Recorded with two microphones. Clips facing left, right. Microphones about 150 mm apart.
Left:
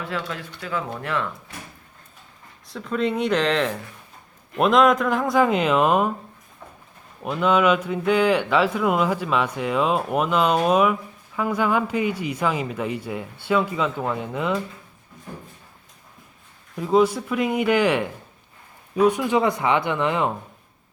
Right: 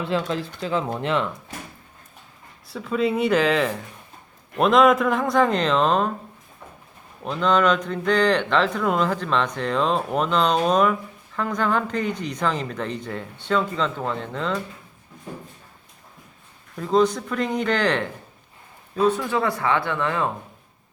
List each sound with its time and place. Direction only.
0.0 s speech: 25° right (ahead or behind)
2.6 s speech: 5° right (ahead or behind)
7.2 s speech: 5° left (ahead or behind)
16.7 s speech: 10° left (ahead or behind)